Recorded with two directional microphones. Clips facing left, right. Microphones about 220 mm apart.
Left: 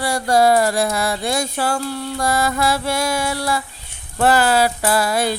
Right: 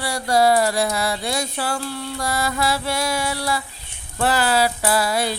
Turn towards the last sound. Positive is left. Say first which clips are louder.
# left 2 dB
turn(degrees=50)  # may be behind; listen again after turning